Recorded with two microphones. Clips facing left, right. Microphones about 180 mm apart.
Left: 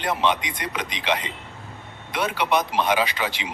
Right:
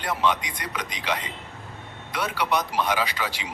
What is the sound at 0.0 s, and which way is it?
Speech, 20° left (ahead or behind).